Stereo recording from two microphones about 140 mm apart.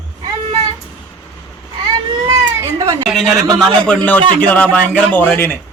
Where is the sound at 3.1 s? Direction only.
Centre (ahead or behind).